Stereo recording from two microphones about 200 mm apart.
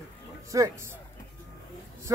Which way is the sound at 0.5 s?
15° right (ahead or behind).